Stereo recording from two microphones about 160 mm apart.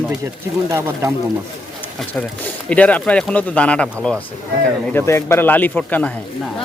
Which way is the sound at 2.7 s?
10° left (ahead or behind).